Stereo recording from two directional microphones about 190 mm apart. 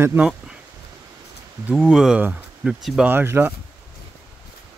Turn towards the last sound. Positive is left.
turn(degrees=-10)  # may be behind; listen again after turning